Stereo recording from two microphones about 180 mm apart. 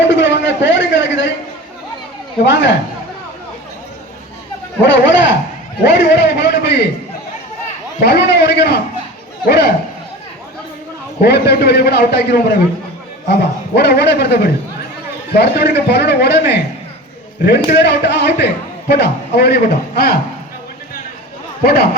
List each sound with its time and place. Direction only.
0.1 s a sound: 85° left
2.4 s speech: 80° left
5.8 s a man's voice: 75° left (ahead or behind)
8.0 s a man's voice: 65° left (ahead or behind)
11.2 s a man's voice: 65° left (ahead or behind)
21.6 s a man's voice: 60° left (ahead or behind)